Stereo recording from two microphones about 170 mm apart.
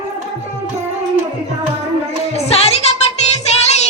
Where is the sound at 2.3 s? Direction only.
35° left (ahead or behind).